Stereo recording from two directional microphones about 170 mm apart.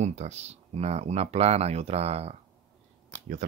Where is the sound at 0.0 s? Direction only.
40° right (ahead or behind).